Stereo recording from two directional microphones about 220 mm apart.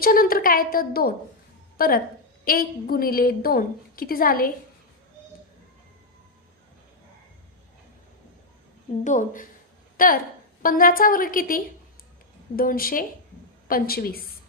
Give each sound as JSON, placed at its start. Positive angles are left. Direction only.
{"t": 0.0, "sound": "a woman's voice", "side_deg": 40}
{"t": 9.0, "sound": "a woman's voice", "side_deg": 35}